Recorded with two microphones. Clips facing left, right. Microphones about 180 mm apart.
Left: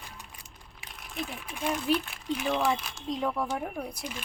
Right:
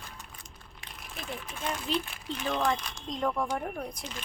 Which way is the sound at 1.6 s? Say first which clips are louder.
Left 5 dB; 10° left (ahead or behind).